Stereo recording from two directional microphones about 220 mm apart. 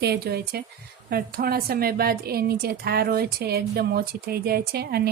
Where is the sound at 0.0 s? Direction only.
45° right (ahead or behind).